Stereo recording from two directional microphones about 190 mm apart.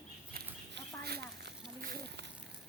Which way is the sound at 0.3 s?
60° right (ahead or behind).